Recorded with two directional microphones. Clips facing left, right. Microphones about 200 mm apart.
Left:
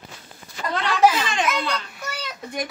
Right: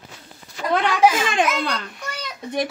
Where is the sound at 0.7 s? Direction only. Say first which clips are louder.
Right 2 dB; 55° right (ahead or behind).